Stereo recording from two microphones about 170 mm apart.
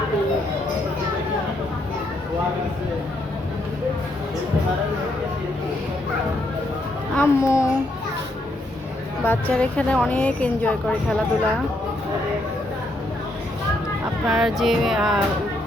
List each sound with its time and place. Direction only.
7.2 s a sound: 15° left (ahead or behind)
9.2 s speech: 10° left (ahead or behind)
14.3 s music: centre (ahead or behind)